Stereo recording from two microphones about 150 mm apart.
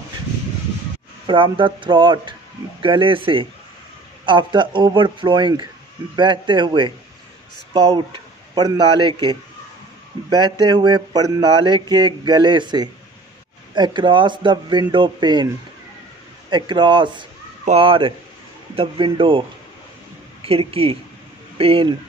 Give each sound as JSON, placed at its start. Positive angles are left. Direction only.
{"t": 1.2, "sound": "a man's voice", "side_deg": -35}
{"t": 10.3, "sound": "a sound", "side_deg": -30}
{"t": 13.7, "sound": "speech", "side_deg": -30}
{"t": 20.4, "sound": "speech", "side_deg": -40}